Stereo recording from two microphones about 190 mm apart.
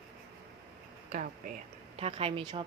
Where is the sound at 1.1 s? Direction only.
45° right (ahead or behind).